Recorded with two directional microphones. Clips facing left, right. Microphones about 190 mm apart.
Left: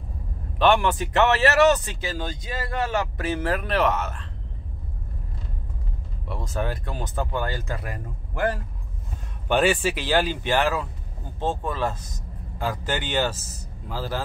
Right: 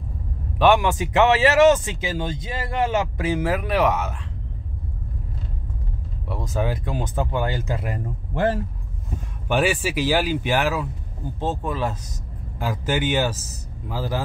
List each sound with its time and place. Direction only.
0.6 s speech: 10° right (ahead or behind)
6.2 s speech: 10° right (ahead or behind)
9.5 s speech: 10° right (ahead or behind)